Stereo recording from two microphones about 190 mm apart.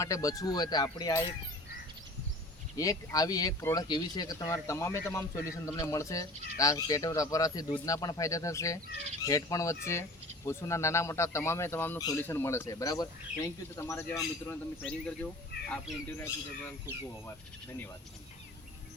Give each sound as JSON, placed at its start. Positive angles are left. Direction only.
{"t": 0.0, "sound": "speech", "side_deg": 15}
{"t": 2.7, "sound": "speech", "side_deg": 20}